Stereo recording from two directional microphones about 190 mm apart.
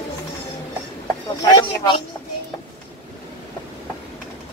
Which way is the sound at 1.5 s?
25° left (ahead or behind).